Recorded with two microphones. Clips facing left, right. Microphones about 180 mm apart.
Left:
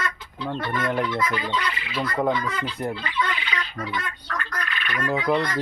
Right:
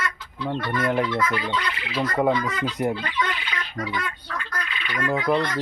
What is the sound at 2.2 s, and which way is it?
Speech, 10° right (ahead or behind).